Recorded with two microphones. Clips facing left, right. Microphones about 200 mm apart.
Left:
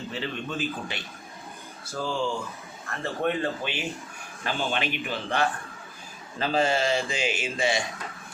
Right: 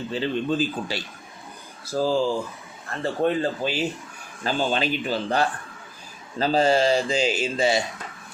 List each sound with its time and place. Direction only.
0.1 s speech: 30° right (ahead or behind)